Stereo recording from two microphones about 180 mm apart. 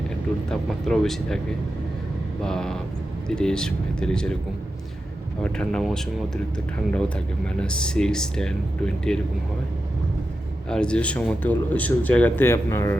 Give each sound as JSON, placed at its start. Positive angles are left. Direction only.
{"t": 0.5, "sound": "speech", "side_deg": 0}
{"t": 2.4, "sound": "speech", "side_deg": 5}
{"t": 5.4, "sound": "speech", "side_deg": 5}
{"t": 10.7, "sound": "speech", "side_deg": 5}